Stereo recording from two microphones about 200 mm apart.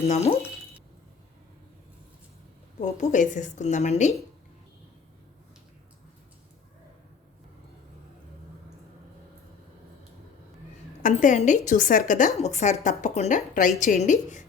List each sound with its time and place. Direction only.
2.8 s a woman's voice: 40° left (ahead or behind)
11.0 s a woman's voice: 40° left (ahead or behind)